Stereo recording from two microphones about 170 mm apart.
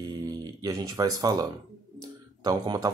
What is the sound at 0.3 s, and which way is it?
Speech, 25° right (ahead or behind).